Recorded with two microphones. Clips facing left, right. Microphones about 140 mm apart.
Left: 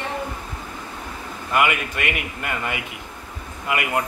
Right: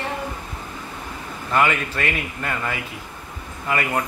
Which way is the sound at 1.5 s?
15° left (ahead or behind).